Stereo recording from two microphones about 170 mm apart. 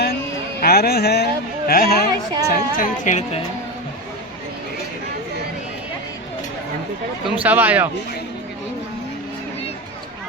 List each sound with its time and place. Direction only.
0.6 s speech: 65° left (ahead or behind); by 3.4 s 45° left (ahead or behind)
7.3 s speech: 10° right (ahead or behind)